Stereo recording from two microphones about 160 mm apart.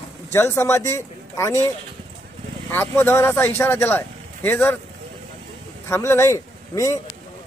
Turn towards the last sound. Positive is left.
turn(degrees=20)  # may be behind; listen again after turning